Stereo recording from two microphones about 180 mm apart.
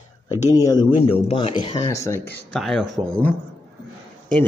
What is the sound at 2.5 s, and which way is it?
Speech, centre (ahead or behind).